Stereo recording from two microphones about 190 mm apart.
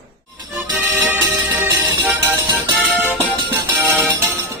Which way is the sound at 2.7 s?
Centre (ahead or behind).